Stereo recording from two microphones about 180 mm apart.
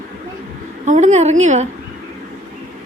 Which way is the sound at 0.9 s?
40° right (ahead or behind).